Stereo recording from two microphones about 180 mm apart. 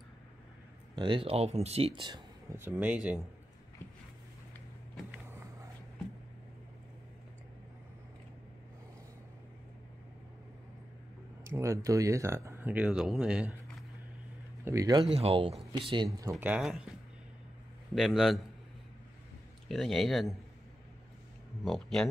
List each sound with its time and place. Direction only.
0.9 s speech: 25° right (ahead or behind)
2.6 s speech: 10° right (ahead or behind)
11.4 s speech: 15° right (ahead or behind)
14.6 s speech: 15° right (ahead or behind)
15.0 s speech: 35° right (ahead or behind)
16.2 s speech: 15° right (ahead or behind)
17.9 s speech: centre (ahead or behind)
19.7 s speech: centre (ahead or behind)
21.6 s speech: centre (ahead or behind)